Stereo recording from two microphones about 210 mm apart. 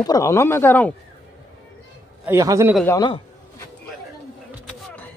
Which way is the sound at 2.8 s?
20° left (ahead or behind).